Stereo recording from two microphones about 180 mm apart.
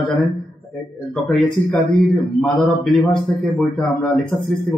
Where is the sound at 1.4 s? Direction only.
Centre (ahead or behind).